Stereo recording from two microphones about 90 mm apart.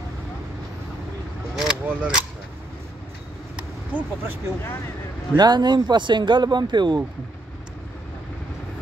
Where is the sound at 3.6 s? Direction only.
20° right (ahead or behind).